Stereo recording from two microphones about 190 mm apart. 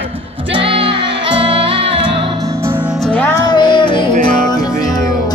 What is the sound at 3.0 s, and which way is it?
Music, 10° left (ahead or behind).